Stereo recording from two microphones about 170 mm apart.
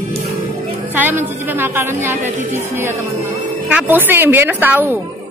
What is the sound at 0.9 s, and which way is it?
Speech, 10° right (ahead or behind).